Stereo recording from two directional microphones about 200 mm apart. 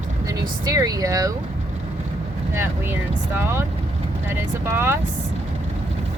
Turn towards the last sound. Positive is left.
turn(degrees=-10)  # may be behind; listen again after turning